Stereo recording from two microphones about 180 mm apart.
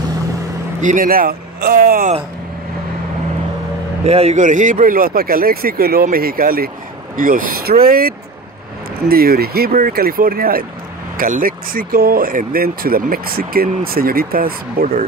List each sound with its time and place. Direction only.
0.7 s speech: 45° right (ahead or behind)
4.0 s speech: 35° right (ahead or behind); by 8.1 s 55° right (ahead or behind)
9.1 s speech: 60° right (ahead or behind)